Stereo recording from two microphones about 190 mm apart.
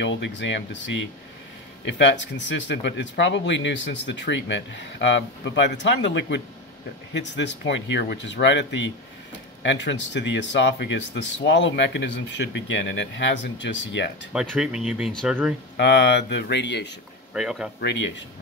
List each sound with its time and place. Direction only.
0.0 s speech: 70° left (ahead or behind)
14.3 s speech: 5° right (ahead or behind)
15.8 s speech: 65° left (ahead or behind)
17.3 s speech: centre (ahead or behind)
17.7 s speech: 60° left (ahead or behind)